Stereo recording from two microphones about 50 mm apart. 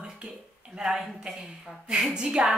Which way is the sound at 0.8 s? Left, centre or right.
Centre.